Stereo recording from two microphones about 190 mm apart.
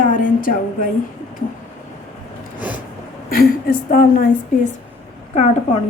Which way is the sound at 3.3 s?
50° left (ahead or behind).